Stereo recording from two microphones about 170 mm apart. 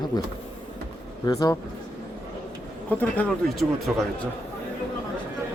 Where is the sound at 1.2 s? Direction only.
20° left (ahead or behind).